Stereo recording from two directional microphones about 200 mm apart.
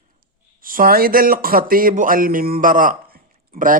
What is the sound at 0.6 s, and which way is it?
Speech, 45° right (ahead or behind).